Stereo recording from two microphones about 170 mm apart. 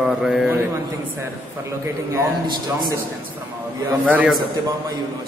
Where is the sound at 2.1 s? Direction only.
20° right (ahead or behind).